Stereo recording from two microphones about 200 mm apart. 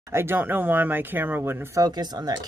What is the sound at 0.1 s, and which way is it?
Speech, 10° right (ahead or behind).